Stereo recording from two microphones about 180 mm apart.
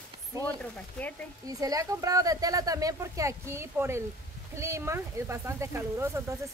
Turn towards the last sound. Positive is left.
turn(degrees=-15)  # may be behind; listen again after turning